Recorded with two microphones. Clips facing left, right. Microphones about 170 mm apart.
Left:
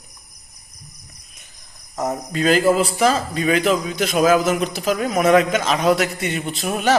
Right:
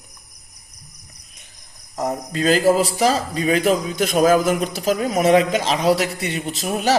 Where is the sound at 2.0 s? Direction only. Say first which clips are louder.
Even; 35° right (ahead or behind).